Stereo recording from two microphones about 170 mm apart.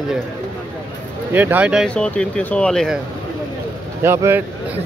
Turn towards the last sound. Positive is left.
turn(degrees=-15)  # may be behind; listen again after turning